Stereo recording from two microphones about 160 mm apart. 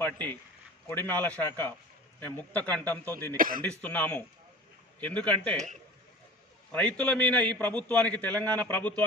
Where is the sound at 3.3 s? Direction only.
60° right (ahead or behind).